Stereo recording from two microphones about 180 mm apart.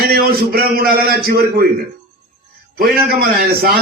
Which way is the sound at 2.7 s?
60° right (ahead or behind).